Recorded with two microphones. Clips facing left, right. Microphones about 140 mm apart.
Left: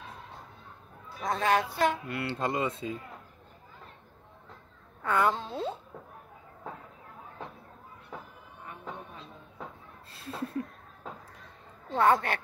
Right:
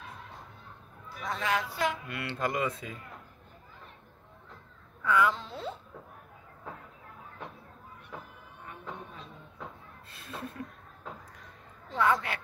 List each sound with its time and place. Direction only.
1.2 s speech: 45° left (ahead or behind)
2.0 s speech: 30° left (ahead or behind)
5.0 s a woman's voice: 50° left (ahead or behind)
5.5 s speech: 25° left (ahead or behind)
10.1 s a sound: 35° left (ahead or behind)
11.9 s speech: 50° left (ahead or behind)